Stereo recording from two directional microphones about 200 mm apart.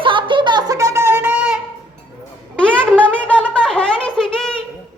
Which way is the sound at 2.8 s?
5° left (ahead or behind).